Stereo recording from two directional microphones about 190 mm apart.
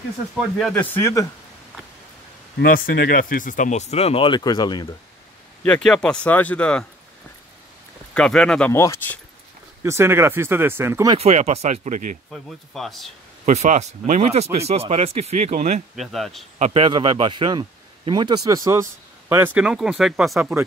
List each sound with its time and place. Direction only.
0.4 s speech: centre (ahead or behind)
2.6 s speech: 55° left (ahead or behind); by 4.8 s 20° left (ahead or behind)
5.6 s speech: 5° left (ahead or behind)
8.1 s speech: 5° left (ahead or behind)
9.8 s speech: 15° right (ahead or behind)
11.1 s speech: 35° right (ahead or behind)
12.3 s speech: centre (ahead or behind)
13.5 s speech: 35° right (ahead or behind)
16.0 s speech: centre (ahead or behind)
16.5 s speech: 35° right (ahead or behind); by 20.4 s centre (ahead or behind)